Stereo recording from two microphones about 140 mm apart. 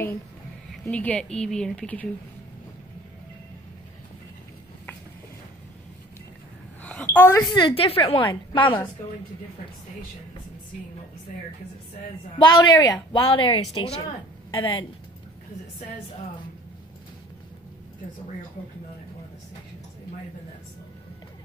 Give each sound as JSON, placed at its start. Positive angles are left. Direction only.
{"t": 0.8, "sound": "speech", "side_deg": 10}
{"t": 6.8, "sound": "a sound", "side_deg": 10}
{"t": 7.3, "sound": "a woman's voice", "side_deg": 35}
{"t": 12.4, "sound": "a woman's voice", "side_deg": 30}